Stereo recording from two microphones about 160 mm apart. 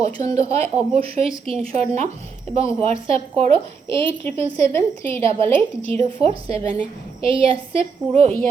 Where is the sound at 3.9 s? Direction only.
35° right (ahead or behind).